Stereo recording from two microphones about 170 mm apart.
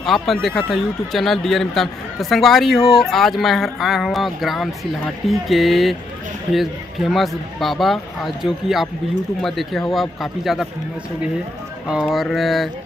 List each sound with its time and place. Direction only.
0.0 s speech: centre (ahead or behind)
11.9 s speech: centre (ahead or behind)